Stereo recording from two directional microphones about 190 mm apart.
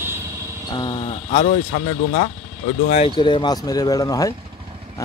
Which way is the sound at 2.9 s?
30° left (ahead or behind).